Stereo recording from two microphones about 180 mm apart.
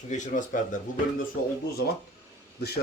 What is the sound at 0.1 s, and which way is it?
Speech, 45° left (ahead or behind).